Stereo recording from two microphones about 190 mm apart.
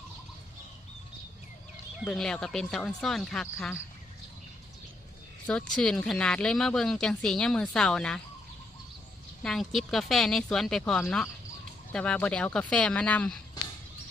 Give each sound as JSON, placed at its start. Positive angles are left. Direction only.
{"t": 2.0, "sound": "speech", "side_deg": 5}
{"t": 5.5, "sound": "speech", "side_deg": 5}
{"t": 9.4, "sound": "speech", "side_deg": 0}